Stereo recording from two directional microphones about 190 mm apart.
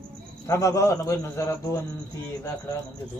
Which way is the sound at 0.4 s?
15° left (ahead or behind).